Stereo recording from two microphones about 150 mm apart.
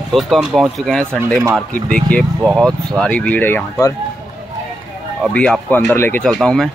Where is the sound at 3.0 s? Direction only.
10° left (ahead or behind).